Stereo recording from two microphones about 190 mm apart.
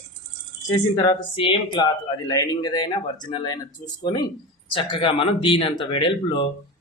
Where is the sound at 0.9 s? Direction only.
25° left (ahead or behind).